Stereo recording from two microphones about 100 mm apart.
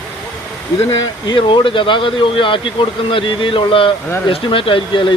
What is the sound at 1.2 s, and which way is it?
Speech, 55° left (ahead or behind).